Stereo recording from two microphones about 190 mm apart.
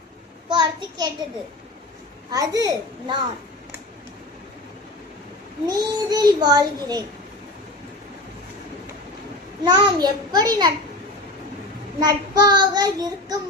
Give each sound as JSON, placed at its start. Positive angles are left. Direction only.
{"t": 0.5, "sound": "a child's voice", "side_deg": -20}
{"t": 2.3, "sound": "child singing", "side_deg": -20}
{"t": 5.6, "sound": "child singing", "side_deg": -20}
{"t": 9.6, "sound": "child singing", "side_deg": -20}
{"t": 11.9, "sound": "child singing", "side_deg": -20}